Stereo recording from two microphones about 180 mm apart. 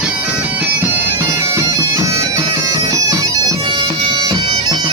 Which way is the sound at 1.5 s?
15° right (ahead or behind).